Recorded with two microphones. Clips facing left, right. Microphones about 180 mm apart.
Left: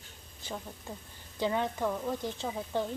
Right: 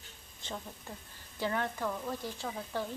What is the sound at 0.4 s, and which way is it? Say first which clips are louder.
Speech: left 2 dB; 10° left (ahead or behind).